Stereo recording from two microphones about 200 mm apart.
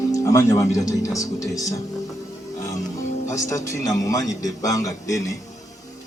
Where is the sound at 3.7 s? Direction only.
15° left (ahead or behind).